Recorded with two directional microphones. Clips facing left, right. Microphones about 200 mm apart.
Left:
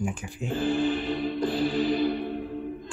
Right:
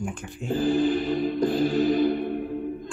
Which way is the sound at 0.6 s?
40° right (ahead or behind).